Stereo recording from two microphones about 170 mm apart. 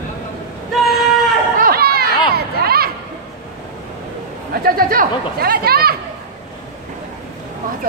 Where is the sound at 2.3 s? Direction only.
65° right (ahead or behind).